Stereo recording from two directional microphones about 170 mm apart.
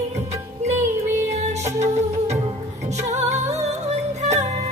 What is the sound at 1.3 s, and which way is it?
Music, 40° right (ahead or behind).